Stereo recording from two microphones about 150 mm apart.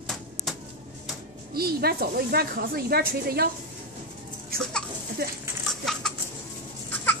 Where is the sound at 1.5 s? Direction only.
90° right.